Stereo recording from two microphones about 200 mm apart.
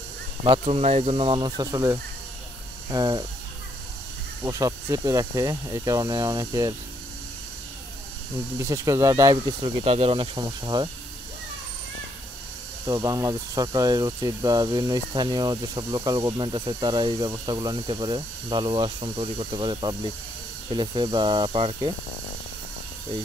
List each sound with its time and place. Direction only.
0.5 s speech: 30° right (ahead or behind)
4.4 s speech: 15° right (ahead or behind)
8.5 s speech: 15° right (ahead or behind)
9.8 s speech: 30° right (ahead or behind)
12.8 s speech: 20° right (ahead or behind)